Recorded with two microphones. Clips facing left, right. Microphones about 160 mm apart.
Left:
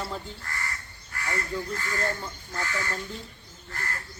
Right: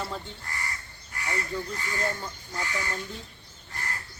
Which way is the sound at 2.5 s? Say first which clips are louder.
Left 1 dB; 15° right (ahead or behind).